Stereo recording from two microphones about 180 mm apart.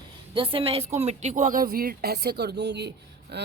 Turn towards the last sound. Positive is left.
turn(degrees=-70)  # may be behind; listen again after turning